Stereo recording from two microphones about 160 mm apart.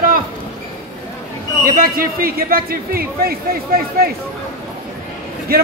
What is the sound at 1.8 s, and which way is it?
A man's voice, 65° right (ahead or behind).